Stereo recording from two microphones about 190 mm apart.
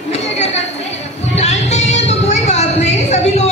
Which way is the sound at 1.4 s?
35° left (ahead or behind).